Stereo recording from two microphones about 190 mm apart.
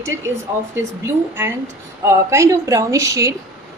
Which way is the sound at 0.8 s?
10° right (ahead or behind).